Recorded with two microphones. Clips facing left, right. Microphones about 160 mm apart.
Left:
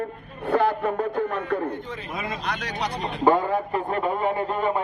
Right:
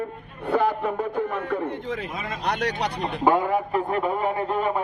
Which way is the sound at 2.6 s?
65° right (ahead or behind).